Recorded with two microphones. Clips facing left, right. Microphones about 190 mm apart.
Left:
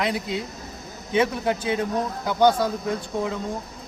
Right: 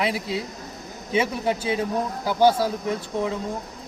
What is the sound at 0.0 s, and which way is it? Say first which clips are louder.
A man's voice: even; 5° right (ahead or behind).